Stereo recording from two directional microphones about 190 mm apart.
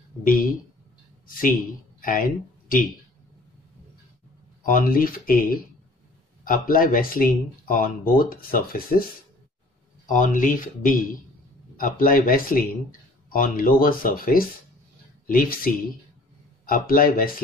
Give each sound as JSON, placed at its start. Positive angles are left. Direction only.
{"t": 0.2, "sound": "speech", "side_deg": 50}
{"t": 2.0, "sound": "a sound", "side_deg": 45}
{"t": 4.6, "sound": "speech", "side_deg": 45}
{"t": 10.0, "sound": "speech", "side_deg": 45}